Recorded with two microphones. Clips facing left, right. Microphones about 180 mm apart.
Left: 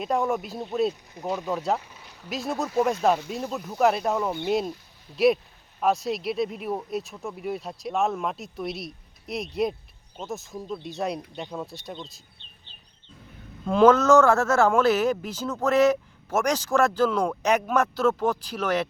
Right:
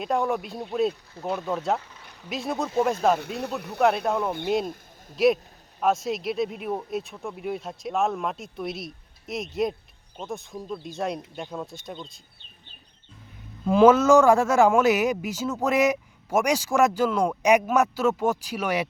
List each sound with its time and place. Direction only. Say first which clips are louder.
0.0 s speech: even; centre (ahead or behind)
3.2 s speech: even; 60° right (ahead or behind)
3.8 s speech: even; centre (ahead or behind)
13.7 s a man's voice: right 1 dB; 5° right (ahead or behind)